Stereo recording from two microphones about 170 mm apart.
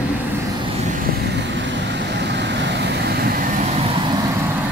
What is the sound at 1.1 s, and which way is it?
Vehicle, 80° right.